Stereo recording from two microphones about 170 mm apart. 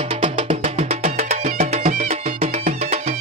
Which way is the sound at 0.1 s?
35° right (ahead or behind).